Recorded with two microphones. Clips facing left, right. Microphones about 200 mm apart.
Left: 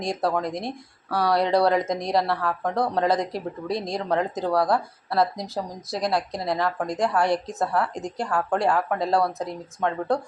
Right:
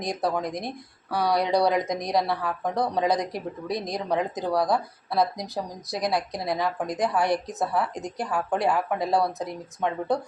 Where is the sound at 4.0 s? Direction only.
5° right (ahead or behind).